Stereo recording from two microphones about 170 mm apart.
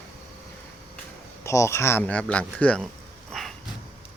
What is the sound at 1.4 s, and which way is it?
Speech, 15° left (ahead or behind).